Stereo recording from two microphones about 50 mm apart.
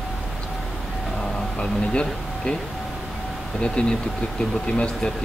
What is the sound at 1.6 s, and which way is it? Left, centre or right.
Speech, centre.